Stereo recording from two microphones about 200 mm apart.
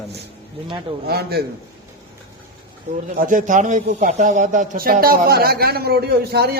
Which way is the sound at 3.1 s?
40° right (ahead or behind).